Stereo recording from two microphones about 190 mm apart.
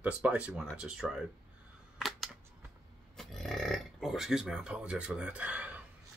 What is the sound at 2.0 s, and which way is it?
Camera, centre (ahead or behind).